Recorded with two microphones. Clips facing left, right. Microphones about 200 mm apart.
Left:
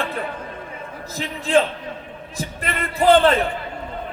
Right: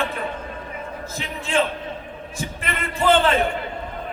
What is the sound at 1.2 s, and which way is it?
Speech, 35° left (ahead or behind).